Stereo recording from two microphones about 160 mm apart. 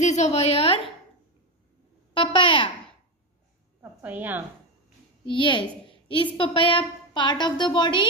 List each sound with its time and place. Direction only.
0.0 s a woman's voice: 45° left (ahead or behind)
2.1 s a woman's voice: 30° left (ahead or behind)
3.8 s a woman's voice: 10° right (ahead or behind)
5.2 s a woman's voice: 30° left (ahead or behind)